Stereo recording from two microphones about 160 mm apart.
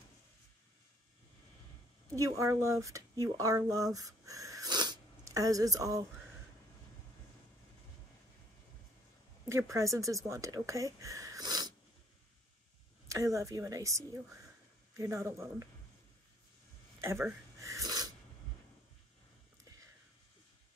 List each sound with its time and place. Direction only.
2.1 s speech: 20° right (ahead or behind)
9.5 s speech: 20° right (ahead or behind)
13.1 s speech: 20° right (ahead or behind)
17.0 s a sound: 15° right (ahead or behind)